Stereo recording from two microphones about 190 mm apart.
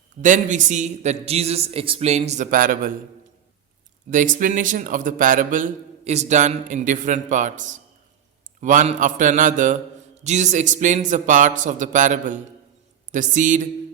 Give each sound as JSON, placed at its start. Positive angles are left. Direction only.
{"t": 0.2, "sound": "a man's voice", "side_deg": -40}
{"t": 4.1, "sound": "a man's voice", "side_deg": -40}